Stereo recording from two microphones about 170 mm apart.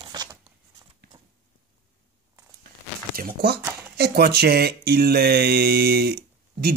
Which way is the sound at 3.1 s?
65° right (ahead or behind).